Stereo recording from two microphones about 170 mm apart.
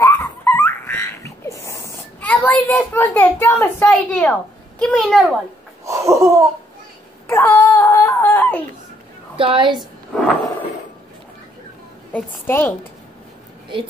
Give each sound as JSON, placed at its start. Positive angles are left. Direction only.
{"t": 0.0, "sound": "frog", "side_deg": 15}
{"t": 3.9, "sound": "a child's voice", "side_deg": 10}
{"t": 5.9, "sound": "laughter", "side_deg": -15}
{"t": 7.2, "sound": "wail", "side_deg": 15}
{"t": 9.4, "sound": "a woman's voice", "side_deg": -30}
{"t": 9.8, "sound": "a sound", "side_deg": 0}
{"t": 12.1, "sound": "a woman's voice", "side_deg": 10}